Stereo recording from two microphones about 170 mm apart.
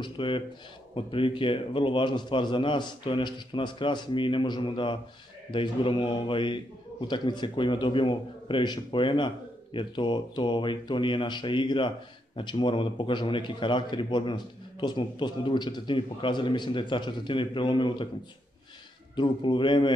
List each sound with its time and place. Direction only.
0.0 s a man's voice: 30° left (ahead or behind)
19.1 s a man's voice: 30° left (ahead or behind)